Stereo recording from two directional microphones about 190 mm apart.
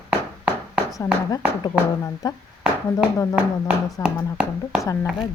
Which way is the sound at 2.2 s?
20° left (ahead or behind).